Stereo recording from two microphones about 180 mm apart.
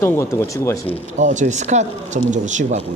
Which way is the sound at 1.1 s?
45° right (ahead or behind).